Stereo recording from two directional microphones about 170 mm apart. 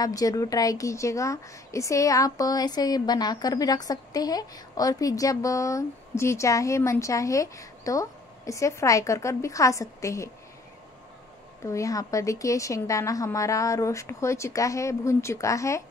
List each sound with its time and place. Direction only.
0.0 s a woman's voice: 20° left (ahead or behind)
11.6 s a woman's voice: 20° left (ahead or behind)